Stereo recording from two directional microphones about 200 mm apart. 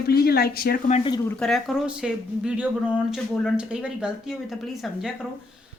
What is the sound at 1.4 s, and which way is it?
Speech, centre (ahead or behind).